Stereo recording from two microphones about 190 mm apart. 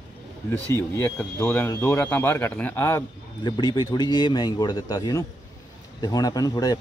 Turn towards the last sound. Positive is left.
turn(degrees=20)  # may be behind; listen again after turning